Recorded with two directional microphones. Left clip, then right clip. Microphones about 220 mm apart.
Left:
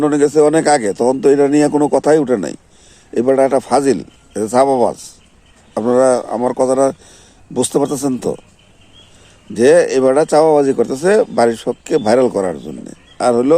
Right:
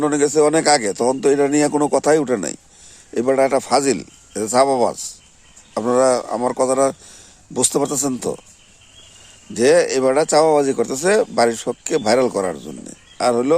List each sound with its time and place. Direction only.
0.0 s speech: 5° right (ahead or behind)
9.6 s speech: centre (ahead or behind)